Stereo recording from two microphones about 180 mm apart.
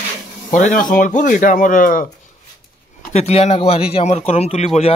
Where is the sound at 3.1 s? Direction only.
35° left (ahead or behind).